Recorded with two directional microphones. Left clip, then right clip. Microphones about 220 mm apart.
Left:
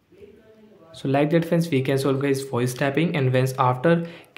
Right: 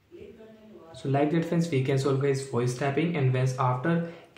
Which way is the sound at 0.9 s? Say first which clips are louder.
Left 5 dB; 40° left (ahead or behind).